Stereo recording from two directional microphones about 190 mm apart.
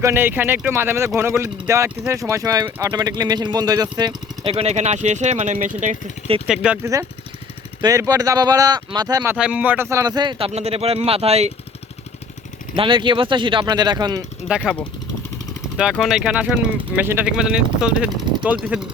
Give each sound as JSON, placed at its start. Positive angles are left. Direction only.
{"t": 0.0, "sound": "speech", "side_deg": -10}
{"t": 6.5, "sound": "speech", "side_deg": -5}
{"t": 7.8, "sound": "speech", "side_deg": -20}
{"t": 9.3, "sound": "speech", "side_deg": -10}
{"t": 12.7, "sound": "speech", "side_deg": -25}
{"t": 14.4, "sound": "speech", "side_deg": -5}
{"t": 15.8, "sound": "speech", "side_deg": 0}